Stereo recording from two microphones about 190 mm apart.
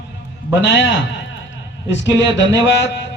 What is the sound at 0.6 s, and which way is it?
Speech, 70° left (ahead or behind).